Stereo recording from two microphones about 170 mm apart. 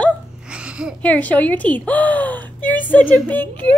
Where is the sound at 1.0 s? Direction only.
10° left (ahead or behind).